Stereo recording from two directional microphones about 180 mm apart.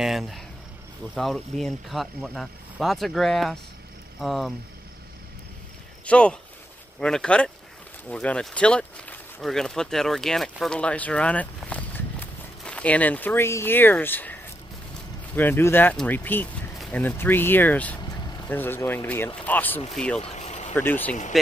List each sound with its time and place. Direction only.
0.0 s speech: centre (ahead or behind)
6.0 s speech: 5° left (ahead or behind)
15.3 s speech: 10° left (ahead or behind)
20.2 s vehicle: 35° left (ahead or behind)
20.7 s speech: 10° left (ahead or behind)